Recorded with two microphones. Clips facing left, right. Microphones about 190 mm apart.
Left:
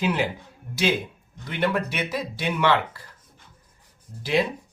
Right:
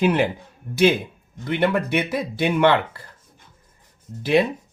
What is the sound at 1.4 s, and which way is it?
Speech, 55° right (ahead or behind).